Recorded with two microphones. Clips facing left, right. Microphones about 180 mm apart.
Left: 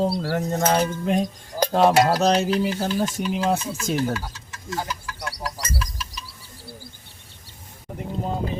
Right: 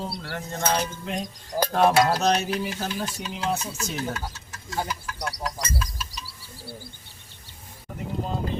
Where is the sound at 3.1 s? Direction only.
45° left (ahead or behind).